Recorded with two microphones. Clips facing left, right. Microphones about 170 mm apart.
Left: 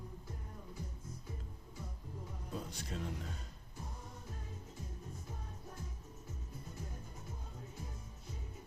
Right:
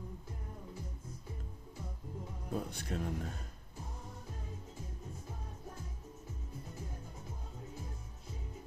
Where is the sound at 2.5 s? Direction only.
55° right (ahead or behind).